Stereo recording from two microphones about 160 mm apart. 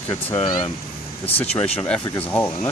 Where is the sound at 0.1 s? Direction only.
35° left (ahead or behind).